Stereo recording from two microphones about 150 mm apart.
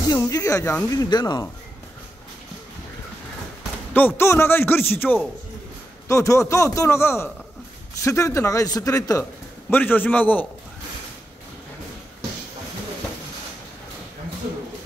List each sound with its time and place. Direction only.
0.1 s speech: 25° left (ahead or behind)
3.9 s a man's voice: 15° left (ahead or behind)
9.7 s a man's voice: 15° left (ahead or behind)